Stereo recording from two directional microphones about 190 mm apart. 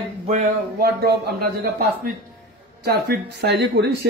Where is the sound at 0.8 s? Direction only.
55° right (ahead or behind).